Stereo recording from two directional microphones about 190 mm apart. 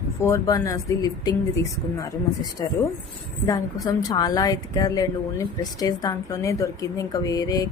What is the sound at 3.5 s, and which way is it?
A woman's voice, 20° left (ahead or behind).